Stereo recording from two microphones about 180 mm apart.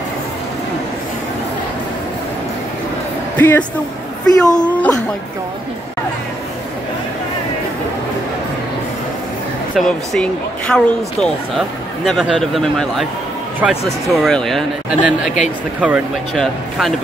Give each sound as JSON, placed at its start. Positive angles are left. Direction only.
{"t": 3.3, "sound": "speech", "side_deg": 10}
{"t": 9.8, "sound": "speech", "side_deg": 5}